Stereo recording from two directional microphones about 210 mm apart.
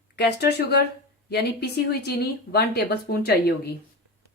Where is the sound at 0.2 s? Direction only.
50° left (ahead or behind).